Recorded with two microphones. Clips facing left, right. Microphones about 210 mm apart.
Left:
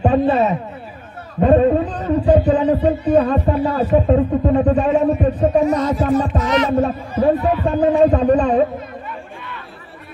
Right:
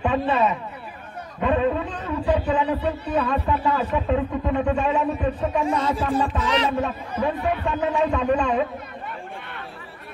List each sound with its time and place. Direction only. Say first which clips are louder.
0.0 s a man's voice: left 6 dB; 40° left (ahead or behind)
6.1 s music: left 6 dB; 30° right (ahead or behind)
6.7 s a man's voice: left 8 dB; 40° left (ahead or behind)